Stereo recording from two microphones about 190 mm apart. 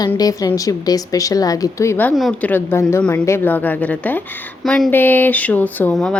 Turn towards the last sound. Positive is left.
turn(degrees=5)  # may be behind; listen again after turning